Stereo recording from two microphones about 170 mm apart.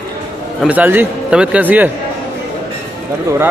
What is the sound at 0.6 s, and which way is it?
A man's voice, 10° right (ahead or behind).